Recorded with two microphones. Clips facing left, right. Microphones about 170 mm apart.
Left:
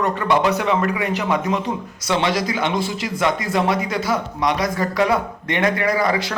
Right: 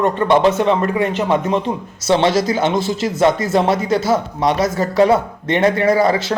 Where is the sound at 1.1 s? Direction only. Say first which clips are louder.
Right 4 dB; 25° right (ahead or behind).